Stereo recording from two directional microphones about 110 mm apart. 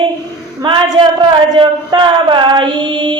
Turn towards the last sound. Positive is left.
turn(degrees=-45)  # may be behind; listen again after turning